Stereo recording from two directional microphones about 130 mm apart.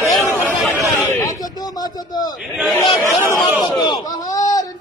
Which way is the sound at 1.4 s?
30° left (ahead or behind).